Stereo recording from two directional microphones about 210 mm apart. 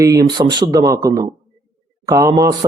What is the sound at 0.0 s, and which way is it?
Speech, 15° right (ahead or behind).